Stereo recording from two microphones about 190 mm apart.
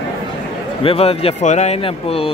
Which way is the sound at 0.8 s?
30° left (ahead or behind).